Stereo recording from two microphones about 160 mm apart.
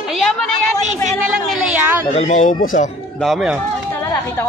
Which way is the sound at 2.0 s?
45° left (ahead or behind).